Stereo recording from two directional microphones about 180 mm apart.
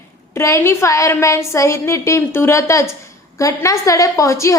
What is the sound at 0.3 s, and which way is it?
A woman's voice, 15° left (ahead or behind).